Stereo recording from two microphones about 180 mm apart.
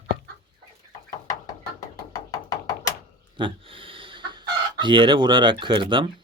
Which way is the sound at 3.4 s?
30° right (ahead or behind).